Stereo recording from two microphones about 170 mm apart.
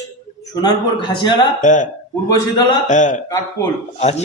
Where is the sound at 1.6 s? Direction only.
45° left (ahead or behind).